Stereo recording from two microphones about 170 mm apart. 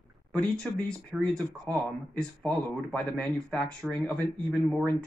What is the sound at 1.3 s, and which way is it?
Speech, 20° right (ahead or behind).